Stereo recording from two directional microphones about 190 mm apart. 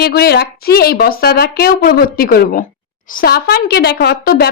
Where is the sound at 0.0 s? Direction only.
55° left (ahead or behind).